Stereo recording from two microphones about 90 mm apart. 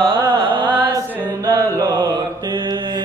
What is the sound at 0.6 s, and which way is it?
Chant, 60° right (ahead or behind).